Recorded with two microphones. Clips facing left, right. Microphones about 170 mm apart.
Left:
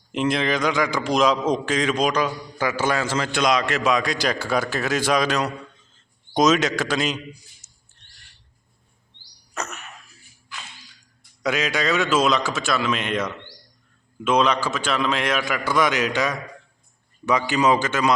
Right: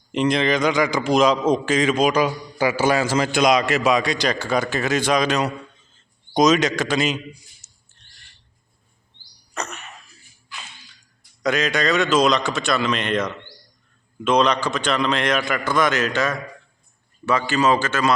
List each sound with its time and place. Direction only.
0.1 s a man's voice: centre (ahead or behind)
7.6 s a sound: 5° left (ahead or behind)
9.6 s throat clearing: 5° left (ahead or behind)
11.2 s a man's voice: 10° left (ahead or behind)